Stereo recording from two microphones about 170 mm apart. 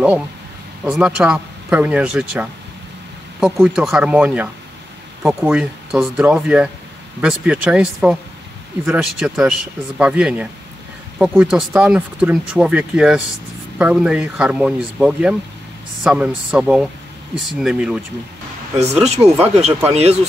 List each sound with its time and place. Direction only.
0.8 s speech: 5° right (ahead or behind)
19.0 s speech: 40° right (ahead or behind)